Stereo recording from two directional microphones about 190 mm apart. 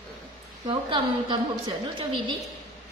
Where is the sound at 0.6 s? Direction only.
25° right (ahead or behind).